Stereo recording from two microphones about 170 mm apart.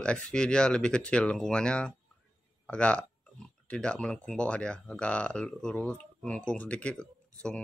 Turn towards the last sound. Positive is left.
turn(degrees=5)  # may be behind; listen again after turning